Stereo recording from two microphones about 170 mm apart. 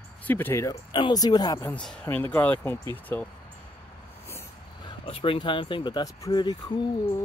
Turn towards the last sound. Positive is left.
turn(degrees=25)  # may be behind; listen again after turning